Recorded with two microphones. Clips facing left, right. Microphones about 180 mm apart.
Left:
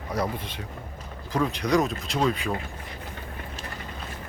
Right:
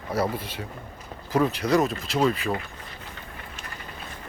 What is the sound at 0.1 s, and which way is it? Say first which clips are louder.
Speech: right 2 dB; 5° right (ahead or behind).